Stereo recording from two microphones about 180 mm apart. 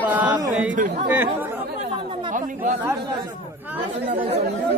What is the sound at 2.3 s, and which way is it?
Chatter, 45° right (ahead or behind).